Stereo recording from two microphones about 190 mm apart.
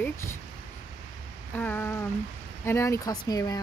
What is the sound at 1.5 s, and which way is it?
Speech, 10° left (ahead or behind).